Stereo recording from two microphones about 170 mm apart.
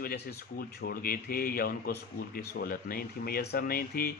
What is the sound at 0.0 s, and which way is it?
A man's voice, 60° left (ahead or behind).